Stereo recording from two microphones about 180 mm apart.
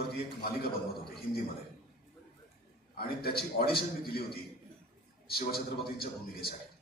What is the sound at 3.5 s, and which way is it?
A man's voice, 60° left (ahead or behind).